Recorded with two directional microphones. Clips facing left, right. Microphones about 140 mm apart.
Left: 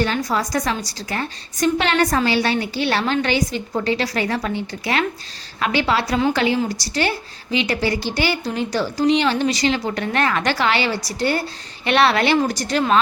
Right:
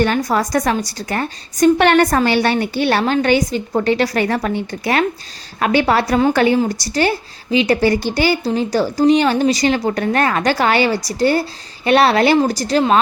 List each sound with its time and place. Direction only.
0.0 s a woman's voice: 55° right (ahead or behind); by 13.0 s 35° right (ahead or behind)